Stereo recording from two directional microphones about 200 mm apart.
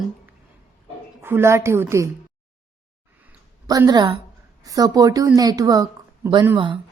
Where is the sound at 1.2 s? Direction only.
10° right (ahead or behind).